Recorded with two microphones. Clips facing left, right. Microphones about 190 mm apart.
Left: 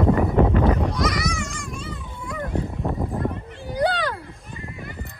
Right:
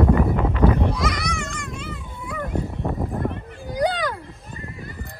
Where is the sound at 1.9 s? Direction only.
5° right (ahead or behind).